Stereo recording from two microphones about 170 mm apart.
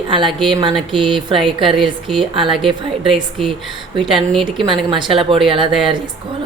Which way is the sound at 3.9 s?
30° right (ahead or behind).